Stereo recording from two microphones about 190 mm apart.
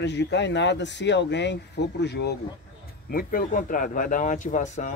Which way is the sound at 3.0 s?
50° left (ahead or behind).